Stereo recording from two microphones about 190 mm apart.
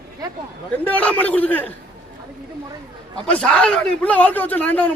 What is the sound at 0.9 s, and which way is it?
Speech, 10° left (ahead or behind).